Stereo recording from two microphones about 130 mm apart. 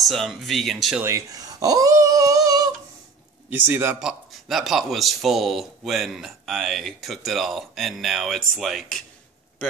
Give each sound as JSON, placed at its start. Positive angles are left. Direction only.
{"t": 0.0, "sound": "speech", "side_deg": 0}
{"t": 1.0, "sound": "speech", "side_deg": -25}
{"t": 3.4, "sound": "a man's voice", "side_deg": -15}
{"t": 4.0, "sound": "speech", "side_deg": -5}